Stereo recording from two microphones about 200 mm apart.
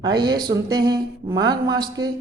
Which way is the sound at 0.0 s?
20° right (ahead or behind).